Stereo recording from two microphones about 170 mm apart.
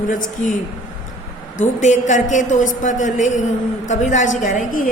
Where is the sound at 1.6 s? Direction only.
45° left (ahead or behind).